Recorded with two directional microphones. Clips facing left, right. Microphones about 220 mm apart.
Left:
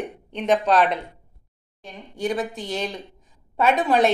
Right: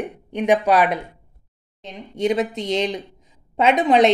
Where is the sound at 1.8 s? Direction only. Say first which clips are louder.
Right 5 dB; 20° right (ahead or behind).